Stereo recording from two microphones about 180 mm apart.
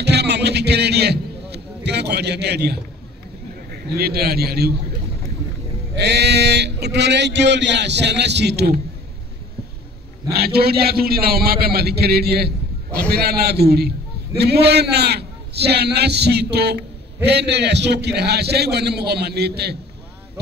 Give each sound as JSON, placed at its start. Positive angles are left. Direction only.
{"t": 0.0, "sound": "a sound", "side_deg": -65}
{"t": 3.7, "sound": "a man's voice", "side_deg": -60}
{"t": 5.9, "sound": "a man's voice", "side_deg": -70}
{"t": 10.3, "sound": "a man's voice", "side_deg": -60}